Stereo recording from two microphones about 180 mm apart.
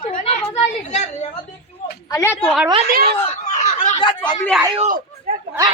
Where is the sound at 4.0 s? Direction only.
25° left (ahead or behind).